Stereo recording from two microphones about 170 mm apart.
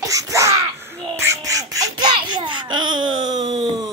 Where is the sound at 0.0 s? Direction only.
20° right (ahead or behind).